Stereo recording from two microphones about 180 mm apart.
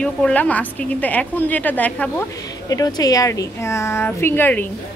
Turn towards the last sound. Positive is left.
turn(degrees=10)  # may be behind; listen again after turning